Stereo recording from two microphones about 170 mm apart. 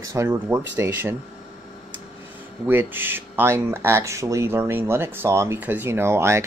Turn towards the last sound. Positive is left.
turn(degrees=-15)  # may be behind; listen again after turning